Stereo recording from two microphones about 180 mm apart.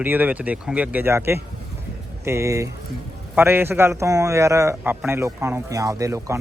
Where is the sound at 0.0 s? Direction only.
10° right (ahead or behind).